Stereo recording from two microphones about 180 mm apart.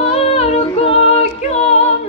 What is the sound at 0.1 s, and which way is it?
A capella, 35° left (ahead or behind).